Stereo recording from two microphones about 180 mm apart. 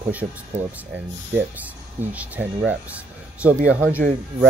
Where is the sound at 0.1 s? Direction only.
10° right (ahead or behind).